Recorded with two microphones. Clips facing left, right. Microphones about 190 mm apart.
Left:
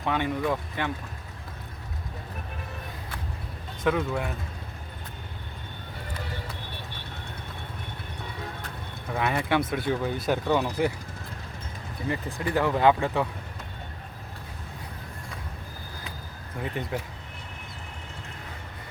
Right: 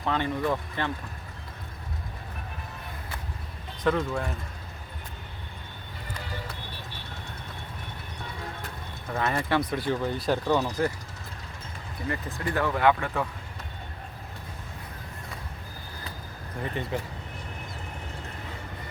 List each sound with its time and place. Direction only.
0.0 s speech: 10° left (ahead or behind)
3.8 s speech: 10° left (ahead or behind)
9.1 s speech: 5° left (ahead or behind)
12.0 s speech: 20° left (ahead or behind)
16.6 s speech: 5° left (ahead or behind)